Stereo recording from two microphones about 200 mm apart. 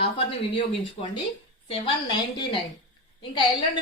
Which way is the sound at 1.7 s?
25° left (ahead or behind).